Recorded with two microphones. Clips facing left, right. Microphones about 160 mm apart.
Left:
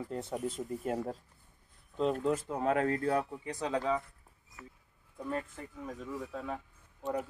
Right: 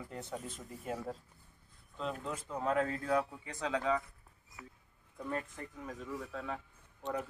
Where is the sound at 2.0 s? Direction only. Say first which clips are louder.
Left 9 dB; 45° left (ahead or behind).